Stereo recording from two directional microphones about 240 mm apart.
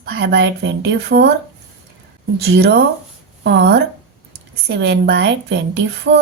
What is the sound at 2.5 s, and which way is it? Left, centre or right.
A woman's voice, right.